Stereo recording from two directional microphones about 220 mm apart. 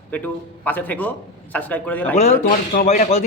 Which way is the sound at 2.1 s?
30° left (ahead or behind).